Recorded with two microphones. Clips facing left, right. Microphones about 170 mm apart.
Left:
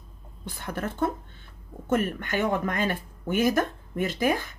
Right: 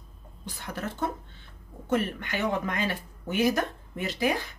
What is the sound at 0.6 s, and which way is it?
Speech, 50° left (ahead or behind).